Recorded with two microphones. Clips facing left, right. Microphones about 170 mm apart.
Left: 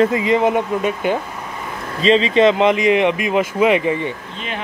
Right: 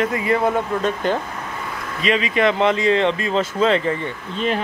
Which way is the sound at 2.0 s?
30° left (ahead or behind).